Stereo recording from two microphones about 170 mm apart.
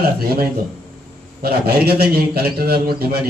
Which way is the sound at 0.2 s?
65° right (ahead or behind).